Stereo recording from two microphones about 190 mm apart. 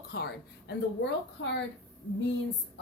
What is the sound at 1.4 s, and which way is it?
Speech, 75° left (ahead or behind).